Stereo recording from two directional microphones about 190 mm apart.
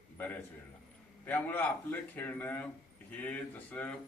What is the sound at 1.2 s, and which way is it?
Speech, 10° left (ahead or behind).